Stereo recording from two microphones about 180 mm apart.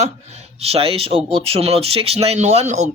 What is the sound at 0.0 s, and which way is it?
Speech, 35° right (ahead or behind).